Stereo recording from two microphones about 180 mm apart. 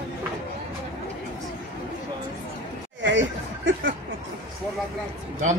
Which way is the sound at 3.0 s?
90° right.